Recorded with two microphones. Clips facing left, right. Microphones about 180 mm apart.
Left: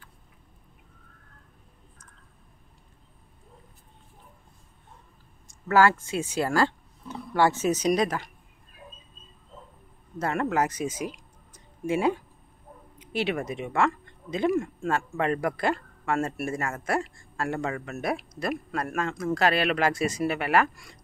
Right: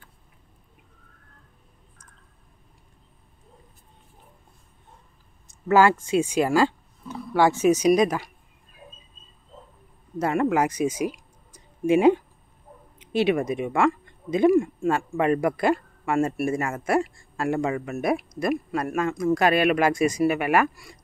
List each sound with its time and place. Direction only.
5.7 s speech: 15° right (ahead or behind)
10.1 s speech: 15° right (ahead or behind)
13.0 s a sound: 20° right (ahead or behind)
13.5 s speech: 15° right (ahead or behind)